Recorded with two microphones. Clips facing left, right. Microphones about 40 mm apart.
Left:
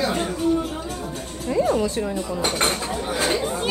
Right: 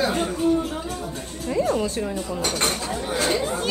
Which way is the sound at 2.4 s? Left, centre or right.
Left.